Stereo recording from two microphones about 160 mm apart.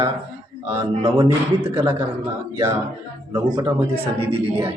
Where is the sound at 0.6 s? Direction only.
15° right (ahead or behind).